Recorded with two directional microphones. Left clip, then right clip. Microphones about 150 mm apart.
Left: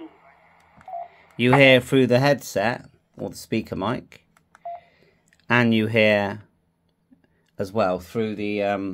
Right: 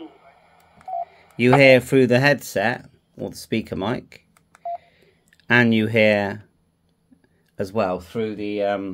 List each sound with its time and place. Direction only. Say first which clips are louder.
0.0 s telephone dialing: right 2 dB; 30° right (ahead or behind)
1.1 s speech: right 2 dB; 10° right (ahead or behind)
4.6 s a sound: right 5 dB; 15° right (ahead or behind)
7.5 s speech: even; 5° right (ahead or behind)
8.0 s speech: even; 25° left (ahead or behind)